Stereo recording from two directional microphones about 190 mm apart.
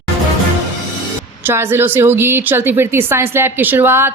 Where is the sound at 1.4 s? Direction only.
10° right (ahead or behind).